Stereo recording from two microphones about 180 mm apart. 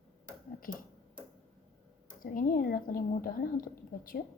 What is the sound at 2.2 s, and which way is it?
A woman's voice, 50° left (ahead or behind).